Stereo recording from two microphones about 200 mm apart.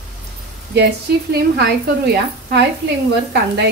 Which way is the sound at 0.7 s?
55° right (ahead or behind).